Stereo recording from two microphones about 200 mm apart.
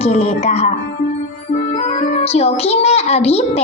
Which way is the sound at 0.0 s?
35° left (ahead or behind).